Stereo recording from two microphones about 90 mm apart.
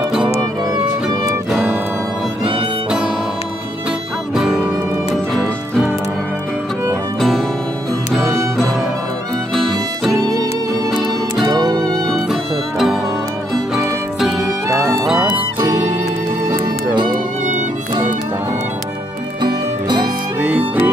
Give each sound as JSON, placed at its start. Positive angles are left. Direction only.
{"t": 4.4, "sound": "music", "side_deg": -10}
{"t": 5.1, "sound": "music", "side_deg": 0}
{"t": 9.6, "sound": "music", "side_deg": 0}
{"t": 10.1, "sound": "music", "side_deg": -40}
{"t": 11.9, "sound": "music", "side_deg": 0}
{"t": 14.7, "sound": "music", "side_deg": -35}
{"t": 19.4, "sound": "music", "side_deg": -50}
{"t": 20.4, "sound": "music", "side_deg": -20}